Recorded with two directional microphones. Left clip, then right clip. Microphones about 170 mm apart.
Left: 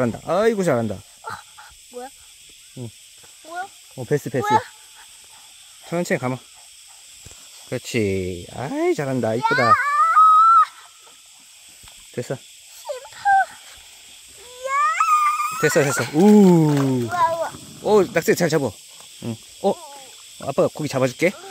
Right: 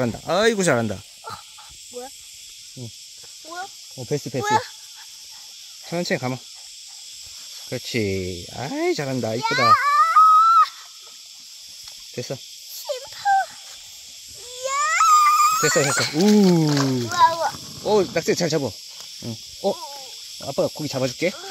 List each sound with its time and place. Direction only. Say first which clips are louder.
0.0 s speech: left 1 dB; 10° left (ahead or behind)
3.4 s cricket: left 3 dB; 20° right (ahead or behind)
5.9 s speech: left 2 dB; 15° left (ahead or behind)
7.7 s speech: left 2 dB; 15° left (ahead or behind)
9.4 s a sound: even; 15° right (ahead or behind)
12.2 s speech: left 3 dB; 15° left (ahead or behind)
12.8 s turkey: left 2 dB; 20° right (ahead or behind)
14.6 s a sound: even; 65° right (ahead or behind)
15.6 s speech: left 1 dB; 25° left (ahead or behind)
17.2 s a sound: right 4 dB; 35° right (ahead or behind)
17.8 s speech: left 3 dB; 25° left (ahead or behind); by 21.3 s 45° left (ahead or behind)